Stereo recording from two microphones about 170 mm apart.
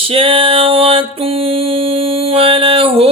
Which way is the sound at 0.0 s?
35° right (ahead or behind).